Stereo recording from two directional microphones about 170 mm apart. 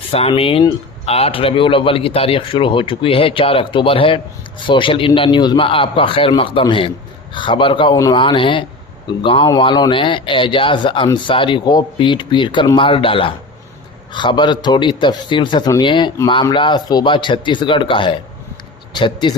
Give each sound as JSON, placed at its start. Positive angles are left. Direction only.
{"t": 0.1, "sound": "speech", "side_deg": 35}
{"t": 7.9, "sound": "speech", "side_deg": 20}
{"t": 8.2, "sound": "speech", "side_deg": 30}